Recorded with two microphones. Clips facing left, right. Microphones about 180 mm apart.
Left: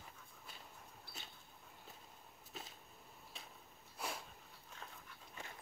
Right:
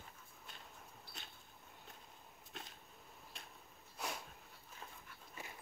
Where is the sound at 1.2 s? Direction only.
5° left (ahead or behind).